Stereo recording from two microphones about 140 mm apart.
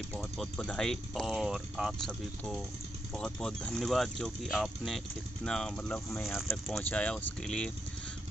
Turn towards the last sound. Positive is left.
turn(degrees=5)  # may be behind; listen again after turning